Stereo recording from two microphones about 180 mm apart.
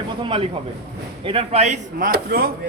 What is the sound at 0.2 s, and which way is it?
A man's voice, 30° right (ahead or behind).